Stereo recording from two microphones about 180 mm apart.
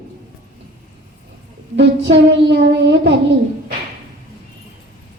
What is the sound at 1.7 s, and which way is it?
Child singing, 70° right (ahead or behind).